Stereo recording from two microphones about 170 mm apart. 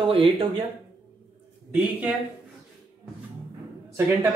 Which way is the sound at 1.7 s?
10° right (ahead or behind).